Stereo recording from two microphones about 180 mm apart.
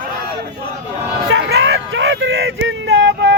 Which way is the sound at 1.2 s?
75° right (ahead or behind).